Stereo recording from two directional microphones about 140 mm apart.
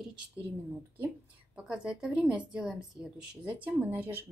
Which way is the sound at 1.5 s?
5° right (ahead or behind).